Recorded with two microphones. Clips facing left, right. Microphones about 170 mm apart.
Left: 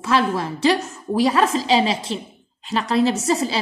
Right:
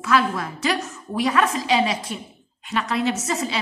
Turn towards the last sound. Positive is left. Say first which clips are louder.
# left 5 dB
turn(degrees=35)  # may be behind; listen again after turning